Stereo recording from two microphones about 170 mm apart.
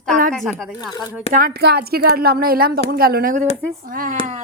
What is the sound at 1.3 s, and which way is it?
A woman's voice, 55° right (ahead or behind).